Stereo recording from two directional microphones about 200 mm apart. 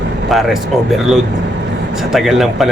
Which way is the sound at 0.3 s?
Centre (ahead or behind).